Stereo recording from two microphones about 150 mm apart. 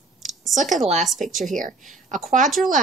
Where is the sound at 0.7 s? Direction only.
50° right (ahead or behind).